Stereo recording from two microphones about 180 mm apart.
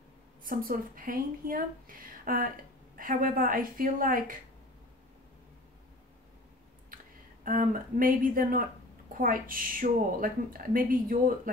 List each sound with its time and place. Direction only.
0.4 s a woman's voice: 50° right (ahead or behind)
7.4 s a woman's voice: 50° right (ahead or behind)